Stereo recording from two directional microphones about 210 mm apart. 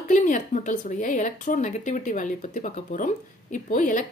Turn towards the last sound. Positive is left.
turn(degrees=40)  # may be behind; listen again after turning